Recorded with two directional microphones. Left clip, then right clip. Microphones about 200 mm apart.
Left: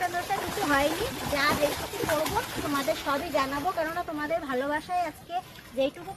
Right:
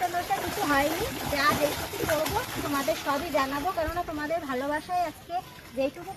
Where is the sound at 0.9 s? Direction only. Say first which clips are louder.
Even; 35° right (ahead or behind).